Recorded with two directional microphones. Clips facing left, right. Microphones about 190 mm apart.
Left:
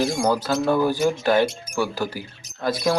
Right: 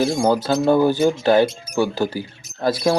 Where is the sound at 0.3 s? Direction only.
30° right (ahead or behind).